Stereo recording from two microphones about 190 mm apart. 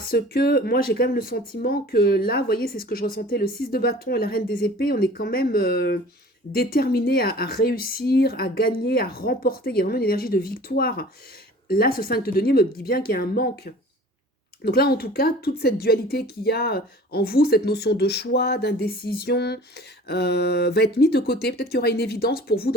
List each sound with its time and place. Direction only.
0.0 s speech: 50° left (ahead or behind)
14.6 s speech: 55° left (ahead or behind)